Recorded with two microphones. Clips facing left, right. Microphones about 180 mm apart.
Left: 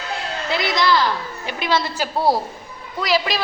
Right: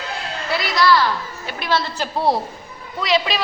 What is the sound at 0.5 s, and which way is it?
A woman's voice, 20° left (ahead or behind).